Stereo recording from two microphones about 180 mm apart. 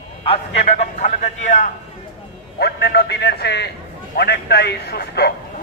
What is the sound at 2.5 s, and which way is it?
A man's voice, 65° left (ahead or behind).